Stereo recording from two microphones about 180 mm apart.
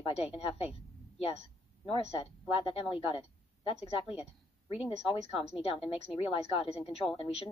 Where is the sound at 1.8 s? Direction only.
35° left (ahead or behind).